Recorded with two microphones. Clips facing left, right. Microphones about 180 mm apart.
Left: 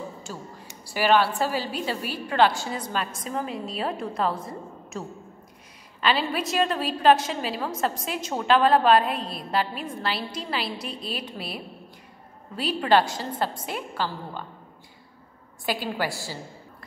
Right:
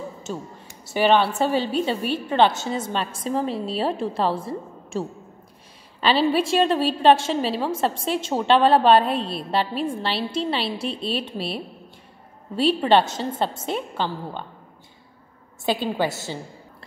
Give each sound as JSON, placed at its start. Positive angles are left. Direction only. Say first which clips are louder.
{"t": 0.8, "sound": "a woman's voice", "louder": "right 3 dB", "side_deg": -25}
{"t": 15.6, "sound": "a woman's voice", "louder": "right 5 dB", "side_deg": -25}